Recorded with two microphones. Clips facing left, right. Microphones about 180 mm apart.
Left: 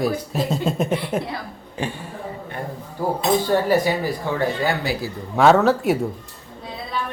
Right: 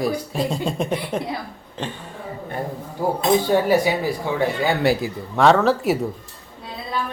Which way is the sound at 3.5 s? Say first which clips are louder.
Right 1 dB; 10° right (ahead or behind).